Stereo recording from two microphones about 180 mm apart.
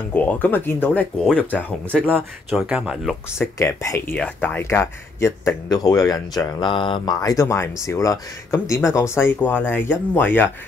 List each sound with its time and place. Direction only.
0.1 s speech: 10° left (ahead or behind)
3.3 s speech: 15° left (ahead or behind)